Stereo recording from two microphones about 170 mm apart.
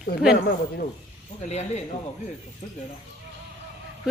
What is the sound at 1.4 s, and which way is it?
Speech, 40° left (ahead or behind).